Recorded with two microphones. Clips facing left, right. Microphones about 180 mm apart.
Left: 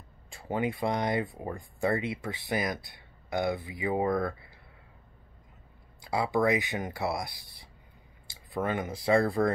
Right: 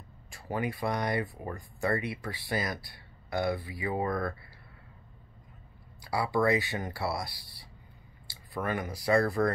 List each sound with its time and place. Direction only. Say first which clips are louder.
0.3 s speech: left 3 dB; 20° left (ahead or behind)
5.9 s speech: left 1 dB; 20° left (ahead or behind)